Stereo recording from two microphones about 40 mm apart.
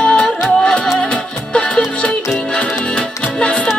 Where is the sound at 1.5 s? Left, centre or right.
Left.